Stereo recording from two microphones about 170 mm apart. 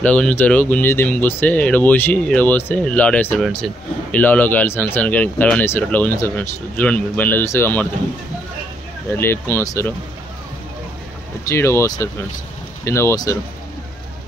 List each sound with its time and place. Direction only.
0.0 s speech: 5° left (ahead or behind)
9.1 s speech: 15° left (ahead or behind)
11.4 s speech: 15° left (ahead or behind)